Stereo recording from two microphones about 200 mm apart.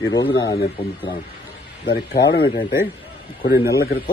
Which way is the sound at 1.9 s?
55° left (ahead or behind).